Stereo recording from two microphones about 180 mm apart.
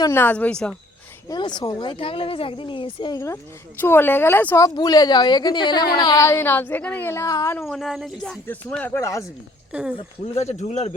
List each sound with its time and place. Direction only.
0.0 s speech: 15° left (ahead or behind)
1.3 s speech: 25° left (ahead or behind)
3.8 s speech: 10° left (ahead or behind)
7.7 s speech: centre (ahead or behind); by 9.2 s 15° left (ahead or behind)
9.9 s speech: 35° left (ahead or behind)